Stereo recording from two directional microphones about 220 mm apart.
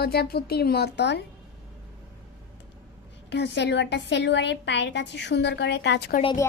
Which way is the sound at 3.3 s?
50° left (ahead or behind).